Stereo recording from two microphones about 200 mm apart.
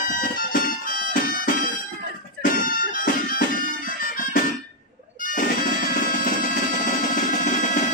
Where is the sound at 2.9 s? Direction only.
45° left (ahead or behind).